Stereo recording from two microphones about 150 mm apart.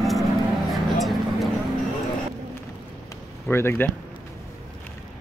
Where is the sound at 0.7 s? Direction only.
Centre (ahead or behind).